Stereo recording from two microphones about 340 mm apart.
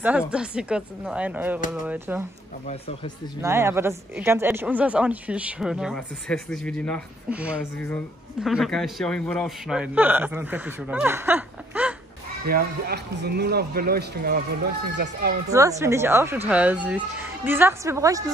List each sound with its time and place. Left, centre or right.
0.2 s speech: centre
3.3 s speech: centre
12.4 s speech: right
15.8 s a woman's voice: centre